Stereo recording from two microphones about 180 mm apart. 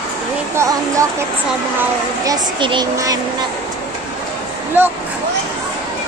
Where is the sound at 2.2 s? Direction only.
25° right (ahead or behind).